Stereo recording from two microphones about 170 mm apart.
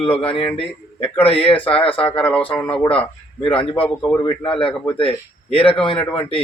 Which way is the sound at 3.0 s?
30° left (ahead or behind).